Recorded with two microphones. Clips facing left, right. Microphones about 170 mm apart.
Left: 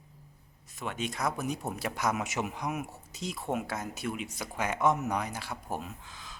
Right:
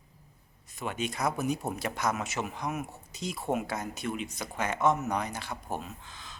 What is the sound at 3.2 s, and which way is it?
Speech, centre (ahead or behind).